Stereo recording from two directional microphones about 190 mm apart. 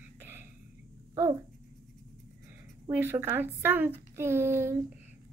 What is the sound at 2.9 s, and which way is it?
A woman's voice, 10° right (ahead or behind).